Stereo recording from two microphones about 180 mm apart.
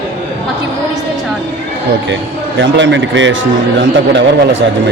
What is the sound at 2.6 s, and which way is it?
A man's voice, 80° right.